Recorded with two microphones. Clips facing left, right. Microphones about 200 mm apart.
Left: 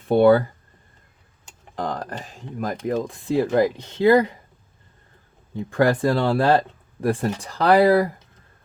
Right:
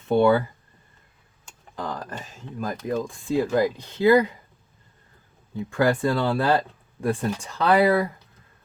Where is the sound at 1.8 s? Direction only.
35° left (ahead or behind).